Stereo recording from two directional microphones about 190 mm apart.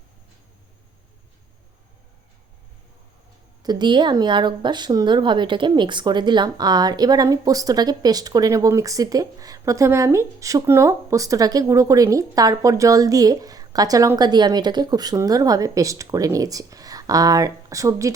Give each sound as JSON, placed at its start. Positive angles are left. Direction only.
{"t": 3.6, "sound": "speech", "side_deg": -20}